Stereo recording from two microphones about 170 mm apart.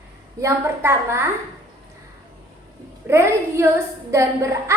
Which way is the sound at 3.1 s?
15° right (ahead or behind).